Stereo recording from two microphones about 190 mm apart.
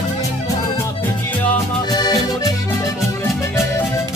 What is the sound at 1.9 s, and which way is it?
Accordion, 20° left (ahead or behind).